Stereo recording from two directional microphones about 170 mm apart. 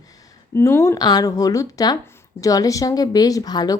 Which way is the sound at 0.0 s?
20° left (ahead or behind).